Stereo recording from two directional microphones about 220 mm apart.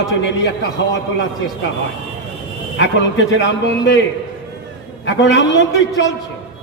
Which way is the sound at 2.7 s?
55° left (ahead or behind).